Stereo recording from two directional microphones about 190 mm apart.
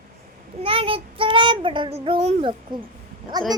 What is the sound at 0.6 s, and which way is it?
Child singing, 30° right (ahead or behind).